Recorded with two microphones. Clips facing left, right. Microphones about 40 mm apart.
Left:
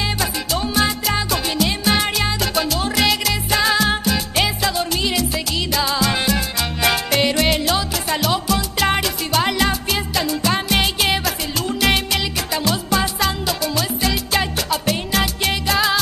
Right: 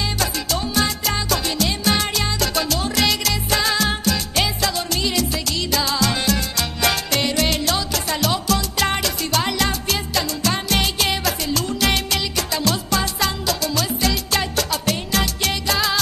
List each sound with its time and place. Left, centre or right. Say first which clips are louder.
0.6 s music: left 3 dB; centre